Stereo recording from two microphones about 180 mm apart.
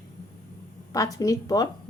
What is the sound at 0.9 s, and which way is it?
Speech, 20° left (ahead or behind).